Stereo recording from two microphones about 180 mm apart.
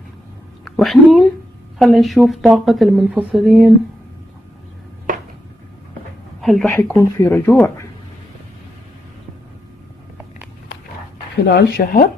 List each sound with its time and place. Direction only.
0.7 s a woman's voice: centre (ahead or behind)
6.4 s speech: centre (ahead or behind)
7.0 s speech: 15° left (ahead or behind)
11.4 s speech: 65° left (ahead or behind)